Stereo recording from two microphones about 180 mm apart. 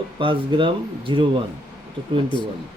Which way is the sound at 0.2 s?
30° right (ahead or behind).